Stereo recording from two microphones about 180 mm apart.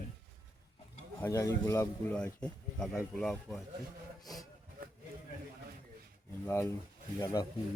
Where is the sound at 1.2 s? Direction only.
15° left (ahead or behind).